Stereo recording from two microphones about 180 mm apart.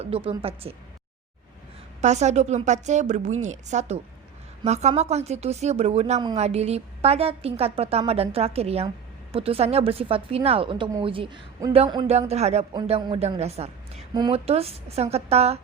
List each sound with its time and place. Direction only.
0.0 s speech: 30° right (ahead or behind)
2.0 s speech: 40° right (ahead or behind)
12.7 s speech: 25° right (ahead or behind)